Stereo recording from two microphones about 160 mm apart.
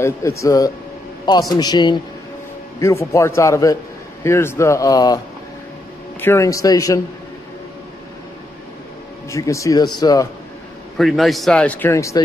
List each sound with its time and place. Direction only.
0.0 s a man's voice: 20° left (ahead or behind)
6.2 s a man's voice: 15° left (ahead or behind)
9.3 s a man's voice: 20° left (ahead or behind)
11.0 s speech: centre (ahead or behind); by 12.2 s 20° left (ahead or behind)